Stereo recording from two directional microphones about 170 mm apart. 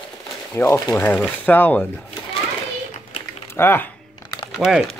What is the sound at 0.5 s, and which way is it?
Speech, 15° left (ahead or behind).